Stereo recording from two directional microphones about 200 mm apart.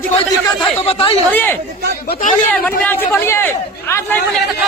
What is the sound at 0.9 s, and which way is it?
Speech, 30° left (ahead or behind).